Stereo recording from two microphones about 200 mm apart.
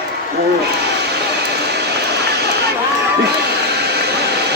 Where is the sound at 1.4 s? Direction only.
55° right (ahead or behind).